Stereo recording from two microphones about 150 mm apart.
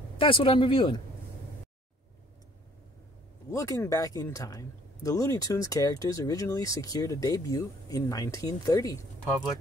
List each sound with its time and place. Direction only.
0.2 s speech: 35° left (ahead or behind)
3.4 s speech: 20° left (ahead or behind)